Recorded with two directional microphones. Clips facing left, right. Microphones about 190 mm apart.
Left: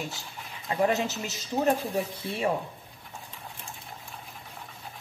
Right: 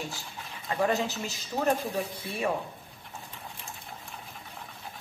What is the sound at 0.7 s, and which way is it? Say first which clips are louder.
A woman's voice: left 2 dB; 20° left (ahead or behind).